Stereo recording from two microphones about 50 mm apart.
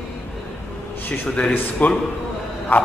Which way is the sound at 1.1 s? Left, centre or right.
Left.